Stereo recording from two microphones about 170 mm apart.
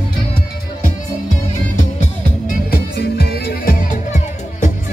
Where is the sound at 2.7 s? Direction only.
70° left (ahead or behind).